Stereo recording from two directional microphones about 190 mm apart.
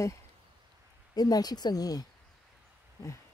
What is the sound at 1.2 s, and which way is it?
Speech, 20° left (ahead or behind).